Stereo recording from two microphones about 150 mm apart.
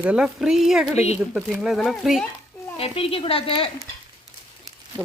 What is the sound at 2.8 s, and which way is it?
Speech, 40° left (ahead or behind).